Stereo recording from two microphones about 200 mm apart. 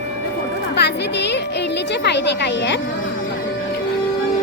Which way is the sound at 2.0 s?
60° left (ahead or behind).